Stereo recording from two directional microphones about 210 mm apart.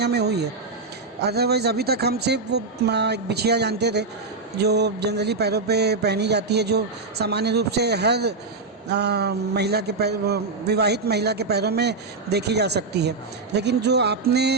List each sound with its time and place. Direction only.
0.0 s a man's voice: 50° right (ahead or behind)